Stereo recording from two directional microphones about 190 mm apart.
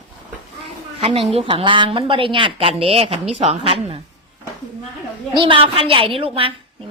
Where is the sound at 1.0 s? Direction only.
30° right (ahead or behind).